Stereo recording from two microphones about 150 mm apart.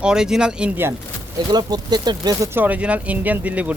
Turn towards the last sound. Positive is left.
turn(degrees=-10)  # may be behind; listen again after turning